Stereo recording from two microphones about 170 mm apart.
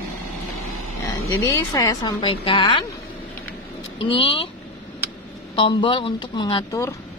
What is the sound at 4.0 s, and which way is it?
Speech, 30° left (ahead or behind).